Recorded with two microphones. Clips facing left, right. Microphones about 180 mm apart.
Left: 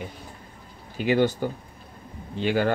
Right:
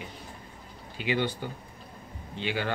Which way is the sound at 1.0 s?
45° left (ahead or behind).